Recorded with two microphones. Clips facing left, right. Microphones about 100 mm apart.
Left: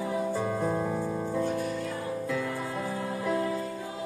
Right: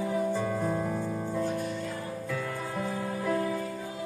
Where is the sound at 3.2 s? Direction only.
20° left (ahead or behind).